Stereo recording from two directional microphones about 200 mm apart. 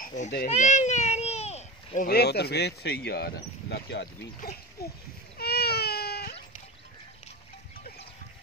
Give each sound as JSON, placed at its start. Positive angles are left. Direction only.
{"t": 0.0, "sound": "babbling", "side_deg": 40}
{"t": 0.5, "sound": "a sound", "side_deg": 35}
{"t": 2.0, "sound": "speech", "side_deg": 55}
{"t": 5.4, "sound": "baby cry", "side_deg": 50}